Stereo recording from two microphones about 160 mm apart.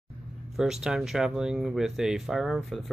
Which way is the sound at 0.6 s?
5° right (ahead or behind).